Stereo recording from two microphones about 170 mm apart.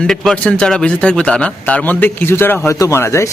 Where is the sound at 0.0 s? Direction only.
5° left (ahead or behind).